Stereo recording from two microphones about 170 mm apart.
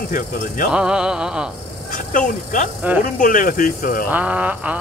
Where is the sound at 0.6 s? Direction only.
5° right (ahead or behind).